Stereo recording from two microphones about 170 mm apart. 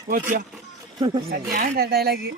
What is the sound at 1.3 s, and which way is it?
Speech, 60° right (ahead or behind).